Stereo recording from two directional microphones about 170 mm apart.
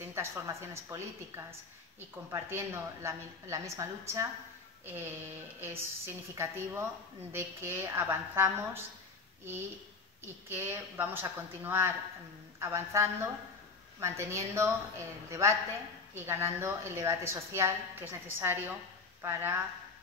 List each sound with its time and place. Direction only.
0.0 s a woman's voice: 15° right (ahead or behind)
10.2 s a woman's voice: 15° right (ahead or behind)
16.2 s a woman's voice: 15° right (ahead or behind)